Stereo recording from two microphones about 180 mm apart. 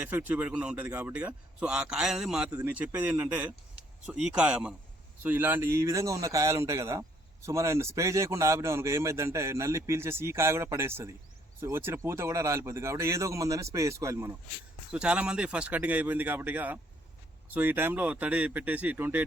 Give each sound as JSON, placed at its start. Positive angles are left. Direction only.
{"t": 0.0, "sound": "speech", "side_deg": -10}